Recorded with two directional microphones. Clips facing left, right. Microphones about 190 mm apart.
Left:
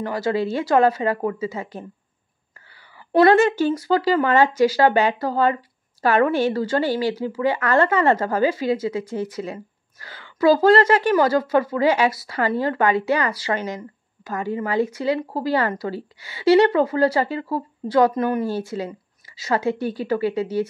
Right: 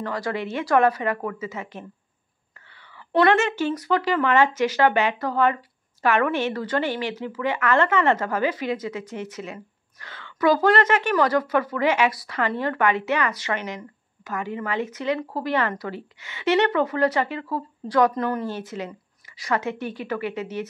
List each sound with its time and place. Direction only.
0.0 s speech: 25° left (ahead or behind)
3.1 s a woman's voice: 30° left (ahead or behind)